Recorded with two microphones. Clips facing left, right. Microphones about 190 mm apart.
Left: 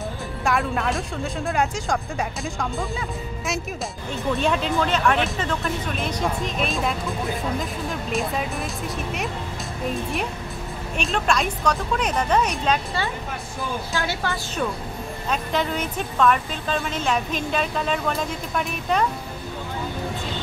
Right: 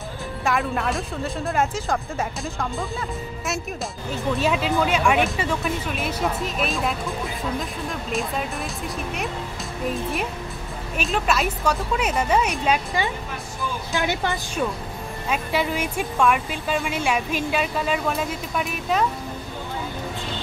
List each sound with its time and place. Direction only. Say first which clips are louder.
0.5 s speech: even; centre (ahead or behind)
8.1 s speech: left 1 dB; centre (ahead or behind)
11.0 s speech: even; 5° right (ahead or behind)
15.2 s speech: right 1 dB; 10° right (ahead or behind)